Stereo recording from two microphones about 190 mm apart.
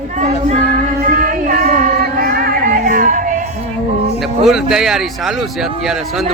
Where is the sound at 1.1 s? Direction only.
45° right (ahead or behind).